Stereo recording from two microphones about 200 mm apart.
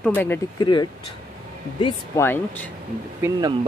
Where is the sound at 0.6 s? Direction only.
20° left (ahead or behind).